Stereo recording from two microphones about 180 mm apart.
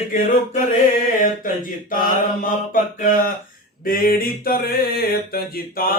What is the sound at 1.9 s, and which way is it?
Mantra, 50° left (ahead or behind).